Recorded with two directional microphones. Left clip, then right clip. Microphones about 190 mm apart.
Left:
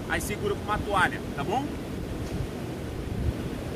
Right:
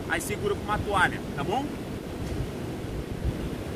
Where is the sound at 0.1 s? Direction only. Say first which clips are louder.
Right 1 dB; 5° left (ahead or behind).